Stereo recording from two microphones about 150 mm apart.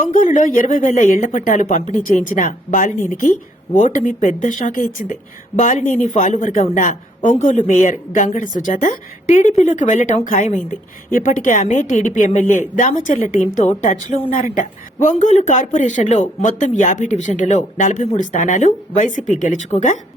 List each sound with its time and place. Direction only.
0.0 s a woman's voice: 70° left (ahead or behind)